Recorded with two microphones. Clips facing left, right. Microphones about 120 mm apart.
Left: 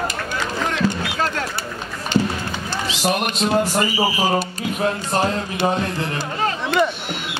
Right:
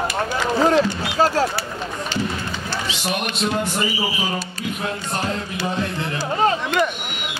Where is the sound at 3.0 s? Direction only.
40° left (ahead or behind).